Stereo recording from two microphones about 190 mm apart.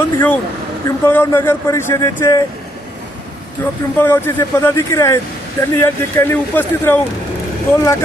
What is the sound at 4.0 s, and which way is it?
Speech, 10° left (ahead or behind).